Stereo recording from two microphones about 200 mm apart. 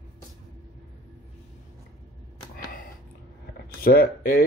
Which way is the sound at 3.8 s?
50° left (ahead or behind).